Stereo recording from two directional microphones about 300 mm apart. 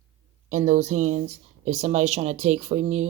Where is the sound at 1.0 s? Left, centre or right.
Right.